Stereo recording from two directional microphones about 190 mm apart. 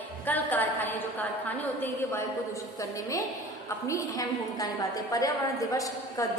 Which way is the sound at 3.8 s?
15° left (ahead or behind).